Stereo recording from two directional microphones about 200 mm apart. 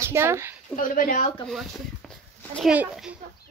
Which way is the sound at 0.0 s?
10° right (ahead or behind).